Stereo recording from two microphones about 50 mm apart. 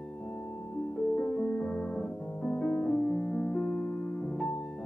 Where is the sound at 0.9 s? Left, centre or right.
Left.